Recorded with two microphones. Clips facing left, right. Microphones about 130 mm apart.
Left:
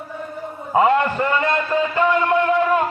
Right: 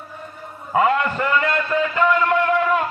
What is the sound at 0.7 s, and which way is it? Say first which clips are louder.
A man's voice: left 2 dB; 25° left (ahead or behind).